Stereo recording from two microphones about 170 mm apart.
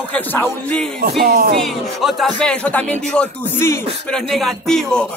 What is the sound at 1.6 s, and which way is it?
Speech, centre (ahead or behind).